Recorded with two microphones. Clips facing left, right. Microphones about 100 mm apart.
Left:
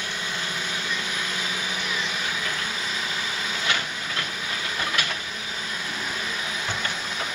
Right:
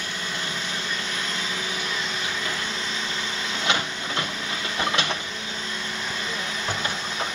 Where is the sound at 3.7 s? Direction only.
20° right (ahead or behind).